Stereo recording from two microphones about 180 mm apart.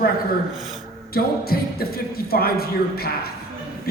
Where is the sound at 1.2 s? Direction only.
55° left (ahead or behind).